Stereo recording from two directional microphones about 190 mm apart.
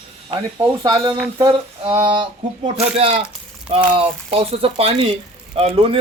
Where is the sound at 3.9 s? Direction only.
30° right (ahead or behind).